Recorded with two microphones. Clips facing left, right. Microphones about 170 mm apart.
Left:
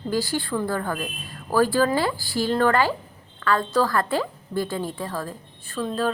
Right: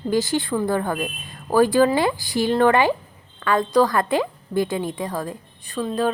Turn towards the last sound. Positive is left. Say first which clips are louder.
# right 2 dB
turn(degrees=-15)  # may be behind; listen again after turning